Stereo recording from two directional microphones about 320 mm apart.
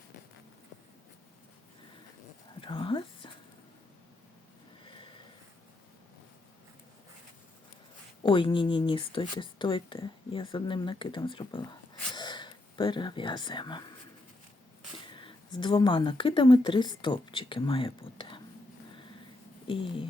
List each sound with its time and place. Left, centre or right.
2.6 s whispering: centre
4.9 s a sound: centre
8.2 s speech: centre
12.1 s gasp: centre
14.9 s speech: centre
19.6 s speech: centre